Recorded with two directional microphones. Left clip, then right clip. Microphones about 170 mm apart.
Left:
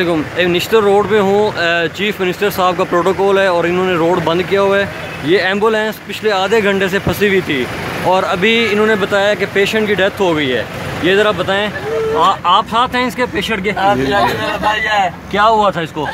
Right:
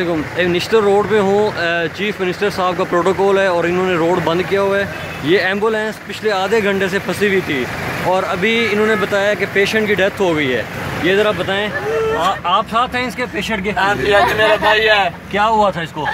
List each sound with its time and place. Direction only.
0.0 s speech: 5° left (ahead or behind)
13.7 s speech: 20° right (ahead or behind)
14.6 s a man's voice: 40° right (ahead or behind)
15.3 s speech: 5° left (ahead or behind)